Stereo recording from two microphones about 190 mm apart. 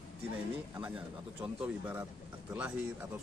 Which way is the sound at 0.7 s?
5° right (ahead or behind).